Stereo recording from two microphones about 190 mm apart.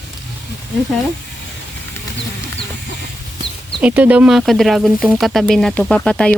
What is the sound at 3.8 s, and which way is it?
Speech, 10° right (ahead or behind).